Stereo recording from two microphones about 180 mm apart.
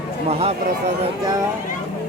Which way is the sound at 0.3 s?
35° right (ahead or behind).